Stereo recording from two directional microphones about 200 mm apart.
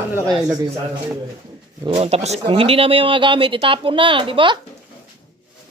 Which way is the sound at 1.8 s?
30° right (ahead or behind).